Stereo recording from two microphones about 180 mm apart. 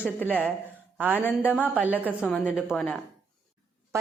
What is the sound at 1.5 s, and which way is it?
Speech, 10° left (ahead or behind).